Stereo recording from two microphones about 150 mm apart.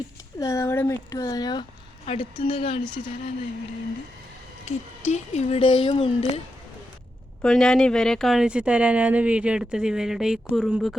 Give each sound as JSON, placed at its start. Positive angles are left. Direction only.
{"t": 0.3, "sound": "speech", "side_deg": 20}
{"t": 4.6, "sound": "speech", "side_deg": 50}
{"t": 7.4, "sound": "speech", "side_deg": 5}